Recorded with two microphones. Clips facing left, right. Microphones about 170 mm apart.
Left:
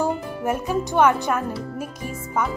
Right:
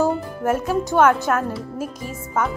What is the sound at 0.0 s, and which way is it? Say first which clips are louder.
Speech: right 3 dB; 10° left (ahead or behind).